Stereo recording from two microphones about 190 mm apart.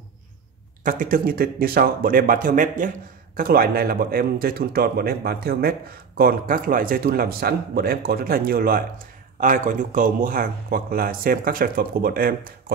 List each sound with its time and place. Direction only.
0.8 s a man's voice: 45° right (ahead or behind)